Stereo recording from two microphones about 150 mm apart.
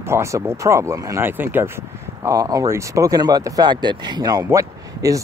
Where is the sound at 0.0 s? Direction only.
20° right (ahead or behind).